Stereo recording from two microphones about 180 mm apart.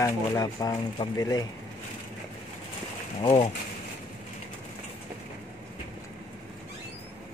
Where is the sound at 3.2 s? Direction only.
25° left (ahead or behind).